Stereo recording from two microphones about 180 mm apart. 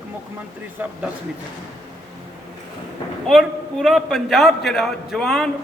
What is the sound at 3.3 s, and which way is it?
A man's voice, centre (ahead or behind).